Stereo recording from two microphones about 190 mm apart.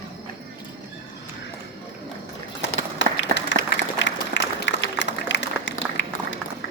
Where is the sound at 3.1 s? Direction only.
80° left.